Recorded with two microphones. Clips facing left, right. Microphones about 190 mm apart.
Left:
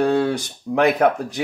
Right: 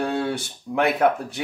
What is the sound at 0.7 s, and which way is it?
Speech, 55° left (ahead or behind).